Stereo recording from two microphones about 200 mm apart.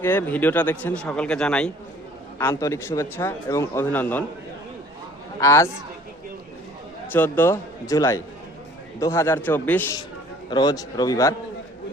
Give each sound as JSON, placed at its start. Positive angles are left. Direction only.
{"t": 0.0, "sound": "speech", "side_deg": 10}
{"t": 5.4, "sound": "speech", "side_deg": 15}
{"t": 7.1, "sound": "speech", "side_deg": 10}
{"t": 10.5, "sound": "a man's voice", "side_deg": 20}